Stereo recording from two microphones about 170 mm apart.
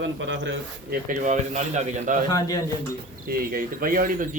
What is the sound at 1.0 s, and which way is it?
Speech, 45° right (ahead or behind).